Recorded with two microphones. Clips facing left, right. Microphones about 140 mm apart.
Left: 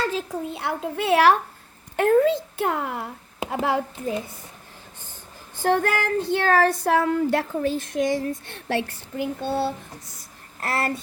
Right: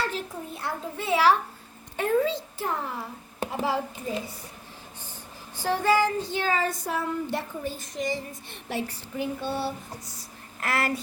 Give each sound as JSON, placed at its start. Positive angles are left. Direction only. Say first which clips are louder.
{"t": 0.3, "sound": "a woman's voice", "louder": "left 6 dB", "side_deg": 75}
{"t": 2.0, "sound": "child singing", "louder": "left 6 dB", "side_deg": 55}
{"t": 5.5, "sound": "child singing", "louder": "left 1 dB", "side_deg": 55}
{"t": 6.8, "sound": "a woman's voice", "louder": "left 9 dB", "side_deg": 90}
{"t": 8.7, "sound": "child singing", "louder": "left 5 dB", "side_deg": 80}
{"t": 10.6, "sound": "speech", "louder": "left 2 dB", "side_deg": 30}